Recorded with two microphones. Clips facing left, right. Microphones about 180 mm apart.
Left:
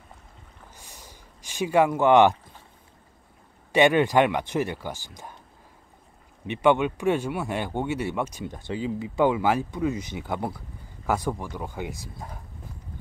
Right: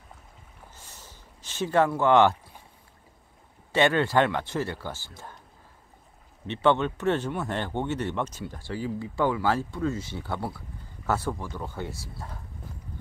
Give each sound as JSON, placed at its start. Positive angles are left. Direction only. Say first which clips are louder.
{"t": 0.7, "sound": "a sound", "louder": "left 2 dB", "side_deg": 15}
{"t": 3.7, "sound": "speech", "louder": "left 3 dB", "side_deg": 15}
{"t": 6.4, "sound": "speech", "louder": "left 2 dB", "side_deg": 15}